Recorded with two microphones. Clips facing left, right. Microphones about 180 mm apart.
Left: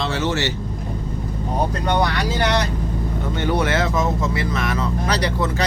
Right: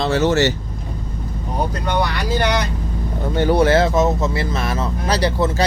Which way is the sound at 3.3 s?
35° right (ahead or behind).